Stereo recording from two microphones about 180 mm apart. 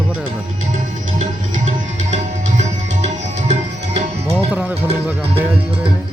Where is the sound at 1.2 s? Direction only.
45° right (ahead or behind).